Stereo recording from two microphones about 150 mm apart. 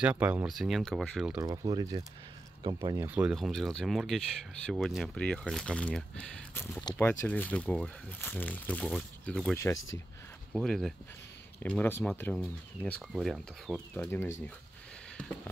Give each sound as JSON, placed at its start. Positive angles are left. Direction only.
{"t": 0.0, "sound": "speech", "side_deg": -10}
{"t": 0.5, "sound": "speech", "side_deg": 0}
{"t": 1.4, "sound": "speech", "side_deg": -25}
{"t": 3.0, "sound": "speech", "side_deg": -10}
{"t": 3.3, "sound": "speech", "side_deg": 0}
{"t": 13.1, "sound": "speech", "side_deg": 0}
{"t": 13.9, "sound": "speech", "side_deg": 15}
{"t": 15.1, "sound": "fireworks", "side_deg": 10}